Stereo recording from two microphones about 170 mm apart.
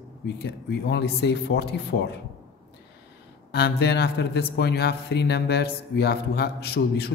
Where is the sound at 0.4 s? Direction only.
85° left.